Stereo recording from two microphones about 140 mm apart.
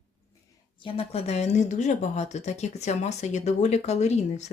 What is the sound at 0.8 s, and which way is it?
Speech, 45° left (ahead or behind).